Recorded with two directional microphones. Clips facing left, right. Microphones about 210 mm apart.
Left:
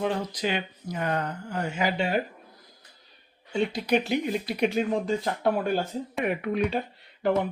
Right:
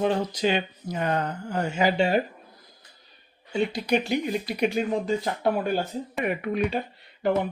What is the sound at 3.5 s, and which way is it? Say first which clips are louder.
Speech: even; centre (ahead or behind).